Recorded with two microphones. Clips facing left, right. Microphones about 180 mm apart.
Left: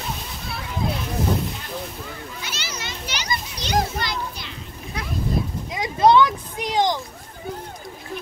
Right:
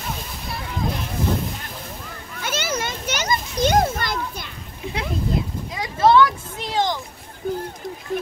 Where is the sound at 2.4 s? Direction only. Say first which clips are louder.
Right 14 dB; 50° right (ahead or behind).